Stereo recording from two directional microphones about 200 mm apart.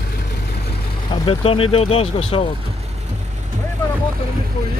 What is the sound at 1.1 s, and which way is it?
Speech, 25° left (ahead or behind).